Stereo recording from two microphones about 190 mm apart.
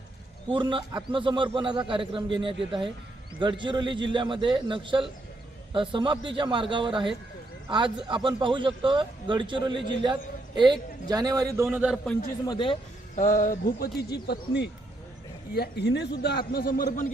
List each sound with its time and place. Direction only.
0.5 s a man's voice: 25° right (ahead or behind); by 11.9 s 10° right (ahead or behind)
12.5 s speech: 25° left (ahead or behind)
13.1 s a man's voice: 45° left (ahead or behind)